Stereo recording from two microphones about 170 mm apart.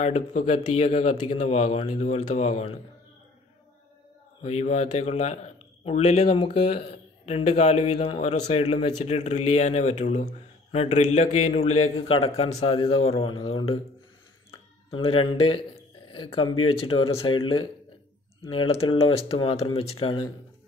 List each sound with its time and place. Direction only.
0.0 s a man's voice: 40° left (ahead or behind)
4.4 s a man's voice: 40° left (ahead or behind)
14.9 s a man's voice: 30° left (ahead or behind)